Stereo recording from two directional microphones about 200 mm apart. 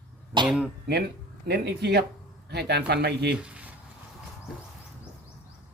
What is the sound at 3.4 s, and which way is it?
Speech, 5° right (ahead or behind).